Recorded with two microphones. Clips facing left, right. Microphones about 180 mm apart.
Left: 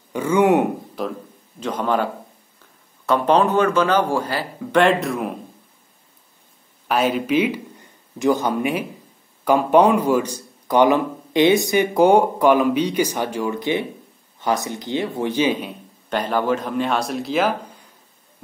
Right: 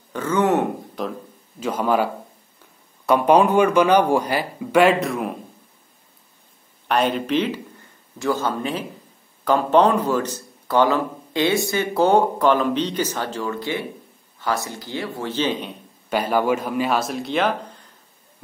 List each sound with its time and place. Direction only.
0.1 s a sound: 10° left (ahead or behind)
1.0 s a man's voice: 5° left (ahead or behind)
1.6 s speech: 5° right (ahead or behind)
3.1 s speech: 10° right (ahead or behind)
4.8 s a man's voice: centre (ahead or behind)
6.9 s a man's voice: 5° left (ahead or behind)
16.1 s a man's voice: 10° right (ahead or behind)